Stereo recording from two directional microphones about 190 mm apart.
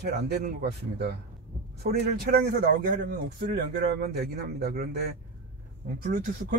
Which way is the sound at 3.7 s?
55° right (ahead or behind).